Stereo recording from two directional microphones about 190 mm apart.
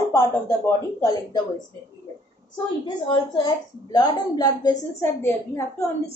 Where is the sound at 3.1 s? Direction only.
20° left (ahead or behind).